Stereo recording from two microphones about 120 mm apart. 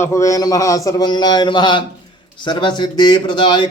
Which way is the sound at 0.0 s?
25° left (ahead or behind).